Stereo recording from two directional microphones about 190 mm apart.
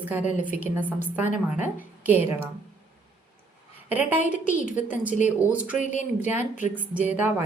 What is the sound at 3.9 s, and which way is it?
Speech, 10° right (ahead or behind).